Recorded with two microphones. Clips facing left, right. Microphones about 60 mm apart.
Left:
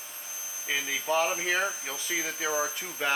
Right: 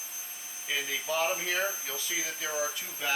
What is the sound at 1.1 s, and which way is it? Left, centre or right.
Speech, centre.